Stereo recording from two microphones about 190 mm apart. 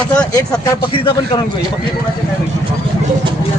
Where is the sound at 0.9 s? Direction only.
30° left (ahead or behind).